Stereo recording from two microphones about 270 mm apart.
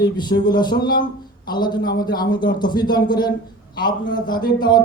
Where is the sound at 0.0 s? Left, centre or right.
Centre.